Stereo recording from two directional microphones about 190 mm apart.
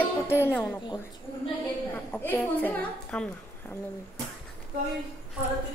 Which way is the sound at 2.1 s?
10° left (ahead or behind).